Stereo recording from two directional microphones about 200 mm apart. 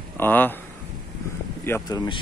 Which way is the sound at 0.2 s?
10° left (ahead or behind).